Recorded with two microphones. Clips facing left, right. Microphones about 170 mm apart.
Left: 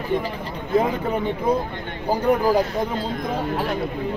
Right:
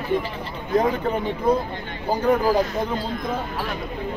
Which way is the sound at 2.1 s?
10° left (ahead or behind).